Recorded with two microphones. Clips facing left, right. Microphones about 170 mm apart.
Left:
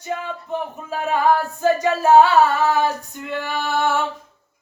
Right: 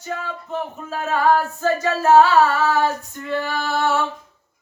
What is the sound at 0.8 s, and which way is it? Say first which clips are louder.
Singing: left 2 dB; 15° left (ahead or behind).